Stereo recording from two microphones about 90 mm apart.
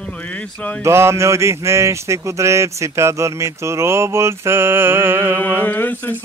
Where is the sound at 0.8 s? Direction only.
30° right (ahead or behind).